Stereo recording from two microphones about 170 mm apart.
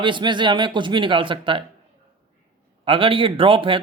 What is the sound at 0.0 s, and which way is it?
A man's voice, 30° right (ahead or behind).